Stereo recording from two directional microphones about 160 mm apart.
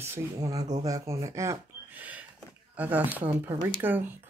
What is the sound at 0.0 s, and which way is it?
Speech, 20° right (ahead or behind).